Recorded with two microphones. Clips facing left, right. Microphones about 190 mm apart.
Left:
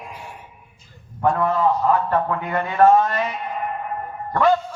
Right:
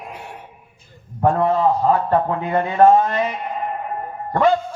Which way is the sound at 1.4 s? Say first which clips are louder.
Right 2 dB; 30° right (ahead or behind).